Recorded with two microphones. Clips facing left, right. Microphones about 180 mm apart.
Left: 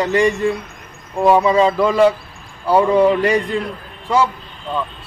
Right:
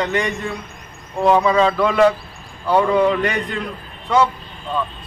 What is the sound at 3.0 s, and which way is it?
Speech, 35° left (ahead or behind).